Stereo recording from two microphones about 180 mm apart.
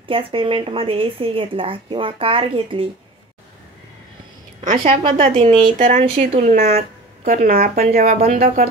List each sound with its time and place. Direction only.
0.1 s speech: 30° right (ahead or behind)
4.6 s a woman's voice: 35° right (ahead or behind); by 8.6 s 55° right (ahead or behind)